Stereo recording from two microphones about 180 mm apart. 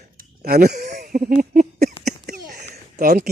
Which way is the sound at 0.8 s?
45° right (ahead or behind).